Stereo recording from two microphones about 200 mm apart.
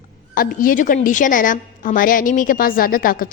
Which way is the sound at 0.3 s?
45° left (ahead or behind).